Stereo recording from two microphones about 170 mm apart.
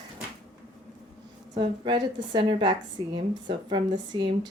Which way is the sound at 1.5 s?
25° right (ahead or behind).